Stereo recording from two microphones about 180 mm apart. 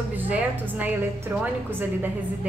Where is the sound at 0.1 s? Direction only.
10° right (ahead or behind).